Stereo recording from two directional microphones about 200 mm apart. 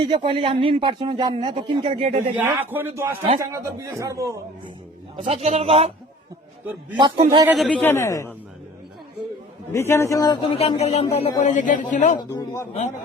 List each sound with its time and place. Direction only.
0.0 s a man's voice: 25° right (ahead or behind)
2.3 s a man's voice: 10° right (ahead or behind)
5.1 s a man's voice: 30° right (ahead or behind)
6.9 s a man's voice: 25° right (ahead or behind)
7.5 s speech: 5° left (ahead or behind)
9.7 s speech: 15° left (ahead or behind)
10.5 s speech: 30° left (ahead or behind)